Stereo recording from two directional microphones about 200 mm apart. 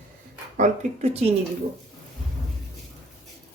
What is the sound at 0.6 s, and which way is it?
Speech, 35° right (ahead or behind).